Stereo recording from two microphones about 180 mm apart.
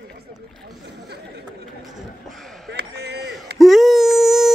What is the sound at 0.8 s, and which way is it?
Chatter, 65° right (ahead or behind).